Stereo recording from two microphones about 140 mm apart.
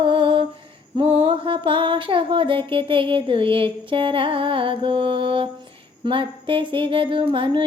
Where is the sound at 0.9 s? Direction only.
40° right (ahead or behind).